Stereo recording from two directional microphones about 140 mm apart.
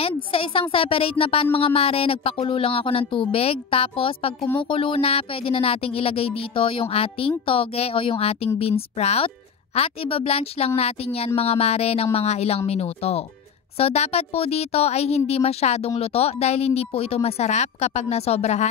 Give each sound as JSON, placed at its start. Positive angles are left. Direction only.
{"t": 0.0, "sound": "speech", "side_deg": 40}